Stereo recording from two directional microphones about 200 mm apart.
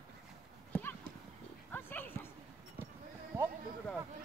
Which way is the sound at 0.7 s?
10° left (ahead or behind).